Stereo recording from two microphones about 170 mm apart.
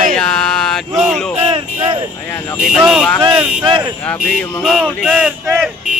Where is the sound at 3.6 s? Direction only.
30° right (ahead or behind).